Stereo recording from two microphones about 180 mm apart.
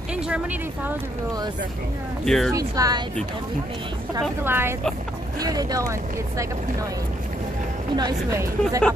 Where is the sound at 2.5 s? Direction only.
20° right (ahead or behind).